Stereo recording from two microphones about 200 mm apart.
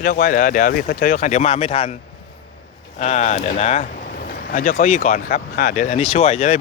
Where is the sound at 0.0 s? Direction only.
45° left (ahead or behind); by 1.9 s 30° left (ahead or behind).